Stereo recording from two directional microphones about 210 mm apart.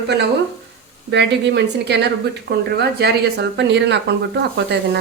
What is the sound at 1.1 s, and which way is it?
Speech, 55° right (ahead or behind).